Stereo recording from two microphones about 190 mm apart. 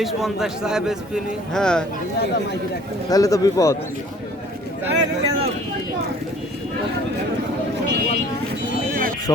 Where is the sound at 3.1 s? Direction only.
20° left (ahead or behind).